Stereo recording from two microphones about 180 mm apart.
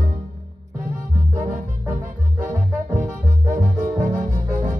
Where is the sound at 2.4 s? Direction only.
45° right (ahead or behind).